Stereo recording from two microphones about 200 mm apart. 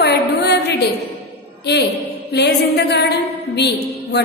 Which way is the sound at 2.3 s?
60° left (ahead or behind).